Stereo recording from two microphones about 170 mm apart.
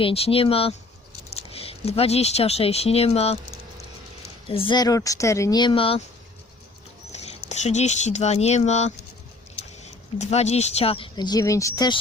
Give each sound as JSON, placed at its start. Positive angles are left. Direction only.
{"t": 0.0, "sound": "speech", "side_deg": 35}
{"t": 4.4, "sound": "speech", "side_deg": 30}
{"t": 7.1, "sound": "speech", "side_deg": 40}